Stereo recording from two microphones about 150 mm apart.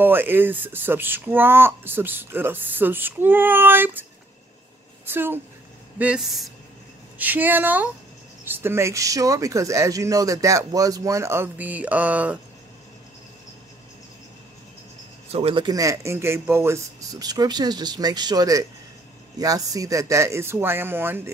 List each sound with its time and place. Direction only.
0.0 s speech: 15° right (ahead or behind)
5.0 s a woman's voice: 15° right (ahead or behind)
15.3 s speech: 35° right (ahead or behind); by 21.2 s 15° right (ahead or behind)